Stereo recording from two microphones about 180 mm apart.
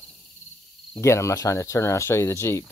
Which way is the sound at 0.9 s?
15° left (ahead or behind).